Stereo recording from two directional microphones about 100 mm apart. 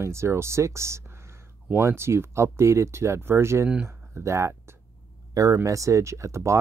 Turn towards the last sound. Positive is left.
turn(degrees=-30)  # may be behind; listen again after turning